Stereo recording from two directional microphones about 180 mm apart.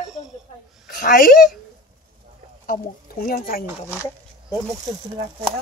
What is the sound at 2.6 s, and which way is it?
Speech, 55° left (ahead or behind).